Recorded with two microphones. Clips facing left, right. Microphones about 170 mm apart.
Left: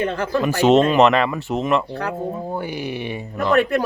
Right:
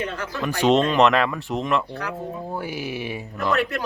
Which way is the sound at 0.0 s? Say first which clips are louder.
Left 8 dB; 55° left (ahead or behind).